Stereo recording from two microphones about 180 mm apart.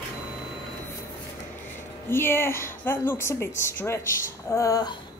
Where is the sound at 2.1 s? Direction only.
15° left (ahead or behind).